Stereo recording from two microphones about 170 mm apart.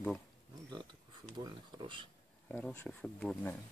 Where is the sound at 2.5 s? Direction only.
10° left (ahead or behind).